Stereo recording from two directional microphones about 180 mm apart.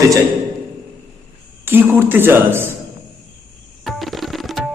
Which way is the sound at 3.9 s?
Centre (ahead or behind).